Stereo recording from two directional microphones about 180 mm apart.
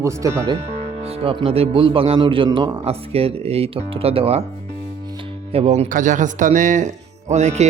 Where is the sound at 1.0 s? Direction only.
30° right (ahead or behind).